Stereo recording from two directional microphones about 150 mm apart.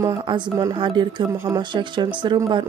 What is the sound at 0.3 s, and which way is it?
A woman's voice, 30° right (ahead or behind).